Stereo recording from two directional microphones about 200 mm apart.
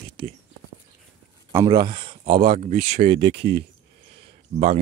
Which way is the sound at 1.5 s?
20° right (ahead or behind).